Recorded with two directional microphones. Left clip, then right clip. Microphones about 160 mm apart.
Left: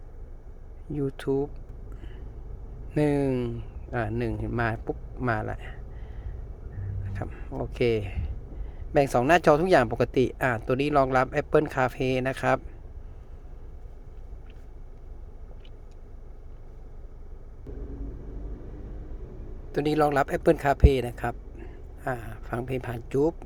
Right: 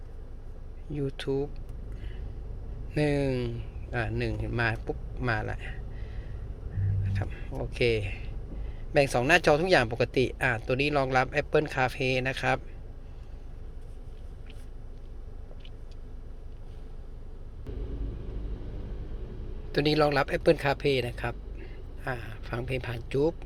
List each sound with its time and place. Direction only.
0.9 s speech: 40° left (ahead or behind)
2.9 s speech: 35° left (ahead or behind)
7.0 s speech: 30° left (ahead or behind)
19.7 s speech: 25° left (ahead or behind); by 23.3 s 40° left (ahead or behind)